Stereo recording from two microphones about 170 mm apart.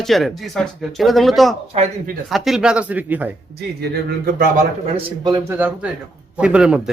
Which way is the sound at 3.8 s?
65° right (ahead or behind).